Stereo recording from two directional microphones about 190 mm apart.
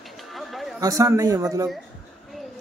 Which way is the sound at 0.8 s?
20° right (ahead or behind).